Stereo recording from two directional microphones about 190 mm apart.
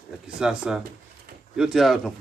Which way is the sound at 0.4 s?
5° right (ahead or behind).